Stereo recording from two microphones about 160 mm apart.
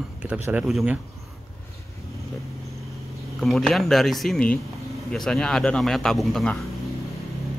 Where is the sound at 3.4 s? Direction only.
Centre (ahead or behind).